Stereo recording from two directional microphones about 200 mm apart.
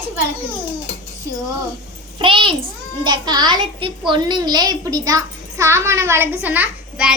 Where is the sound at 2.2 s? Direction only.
25° right (ahead or behind); by 7.1 s 5° right (ahead or behind).